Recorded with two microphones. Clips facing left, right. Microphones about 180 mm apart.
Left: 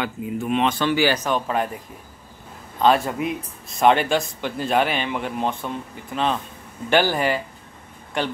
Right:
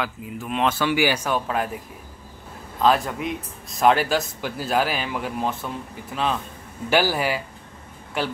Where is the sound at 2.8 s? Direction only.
Centre (ahead or behind).